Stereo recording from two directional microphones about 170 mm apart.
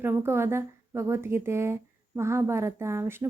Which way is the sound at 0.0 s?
15° right (ahead or behind).